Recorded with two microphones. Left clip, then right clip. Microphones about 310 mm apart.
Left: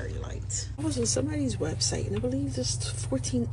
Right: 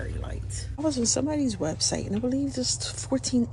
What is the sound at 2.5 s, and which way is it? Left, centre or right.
Speech, centre.